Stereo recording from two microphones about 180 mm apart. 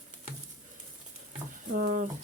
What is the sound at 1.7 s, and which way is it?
Speech, 40° right (ahead or behind).